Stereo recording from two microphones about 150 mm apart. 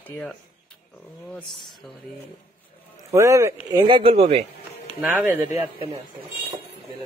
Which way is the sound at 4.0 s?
40° right (ahead or behind).